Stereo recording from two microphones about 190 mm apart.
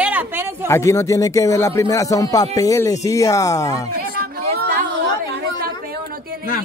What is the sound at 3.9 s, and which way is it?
Chatter, 50° right (ahead or behind).